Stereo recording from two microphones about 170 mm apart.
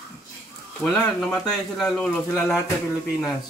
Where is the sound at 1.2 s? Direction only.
5° left (ahead or behind).